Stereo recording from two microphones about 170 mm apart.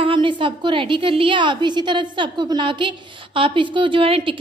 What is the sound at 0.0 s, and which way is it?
A woman's voice, 30° right (ahead or behind).